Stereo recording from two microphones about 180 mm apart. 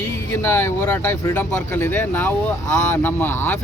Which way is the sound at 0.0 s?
15° left (ahead or behind).